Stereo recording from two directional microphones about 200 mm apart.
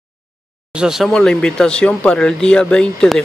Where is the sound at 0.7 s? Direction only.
Centre (ahead or behind).